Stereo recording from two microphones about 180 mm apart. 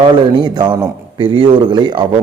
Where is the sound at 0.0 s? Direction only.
25° right (ahead or behind).